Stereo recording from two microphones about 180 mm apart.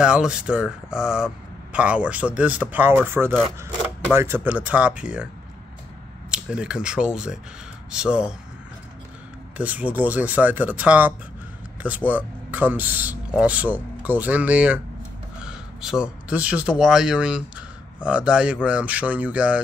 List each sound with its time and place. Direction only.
0.0 s speech: 5° right (ahead or behind)
6.3 s speech: 5° right (ahead or behind)
9.6 s speech: 10° right (ahead or behind)